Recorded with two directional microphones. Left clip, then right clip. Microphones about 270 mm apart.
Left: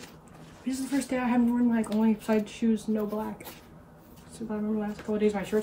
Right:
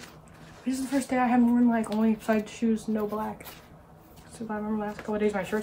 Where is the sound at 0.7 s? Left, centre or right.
Centre.